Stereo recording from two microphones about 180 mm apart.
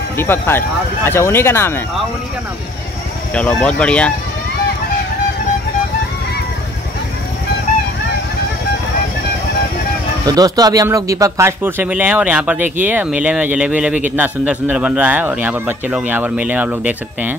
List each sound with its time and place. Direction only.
0.2 s speech: 10° left (ahead or behind)
3.3 s speech: 5° left (ahead or behind)
10.2 s speech: 20° right (ahead or behind)